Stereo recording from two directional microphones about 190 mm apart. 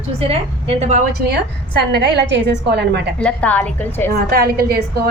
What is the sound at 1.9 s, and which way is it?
A woman's voice, 65° right (ahead or behind).